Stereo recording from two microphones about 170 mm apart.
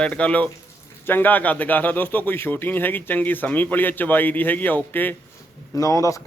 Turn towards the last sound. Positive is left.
turn(degrees=20)  # may be behind; listen again after turning